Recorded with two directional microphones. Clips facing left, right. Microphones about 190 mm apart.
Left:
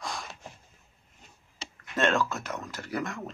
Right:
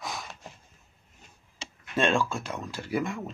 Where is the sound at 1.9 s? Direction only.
10° right (ahead or behind).